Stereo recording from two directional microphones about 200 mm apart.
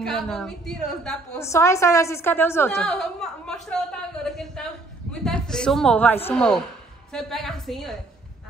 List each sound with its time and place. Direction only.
0.0 s a man's voice: centre (ahead or behind)
1.4 s a woman's voice: 15° left (ahead or behind)